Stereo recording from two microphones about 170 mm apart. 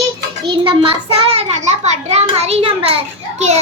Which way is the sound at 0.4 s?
30° right (ahead or behind).